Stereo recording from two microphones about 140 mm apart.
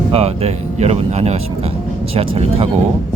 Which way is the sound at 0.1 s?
45° right (ahead or behind).